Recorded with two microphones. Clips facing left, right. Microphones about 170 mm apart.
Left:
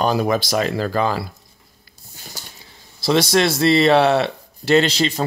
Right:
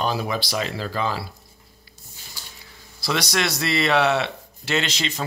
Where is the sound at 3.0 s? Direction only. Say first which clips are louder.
Left 8 dB; 30° left (ahead or behind).